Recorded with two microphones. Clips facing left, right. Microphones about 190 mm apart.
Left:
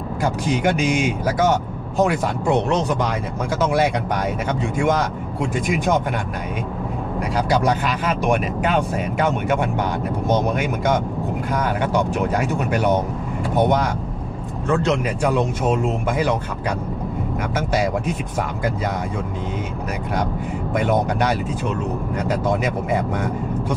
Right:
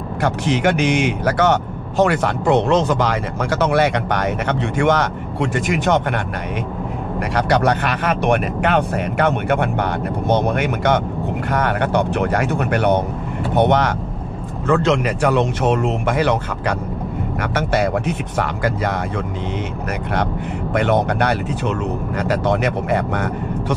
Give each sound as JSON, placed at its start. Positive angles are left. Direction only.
{"t": 0.2, "sound": "speech", "side_deg": -75}
{"t": 2.7, "sound": "speech", "side_deg": -90}
{"t": 7.3, "sound": "speech", "side_deg": -65}
{"t": 14.7, "sound": "speech", "side_deg": -90}
{"t": 20.7, "sound": "speech", "side_deg": -70}